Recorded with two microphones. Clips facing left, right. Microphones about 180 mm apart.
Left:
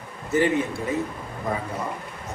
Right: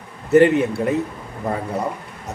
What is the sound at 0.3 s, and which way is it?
Speech, 65° right (ahead or behind).